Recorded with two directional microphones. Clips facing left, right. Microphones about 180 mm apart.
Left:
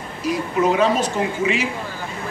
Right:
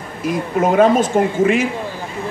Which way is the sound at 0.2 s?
50° right (ahead or behind).